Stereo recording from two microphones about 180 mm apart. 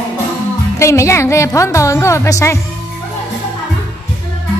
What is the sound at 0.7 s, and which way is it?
Speech, 15° left (ahead or behind).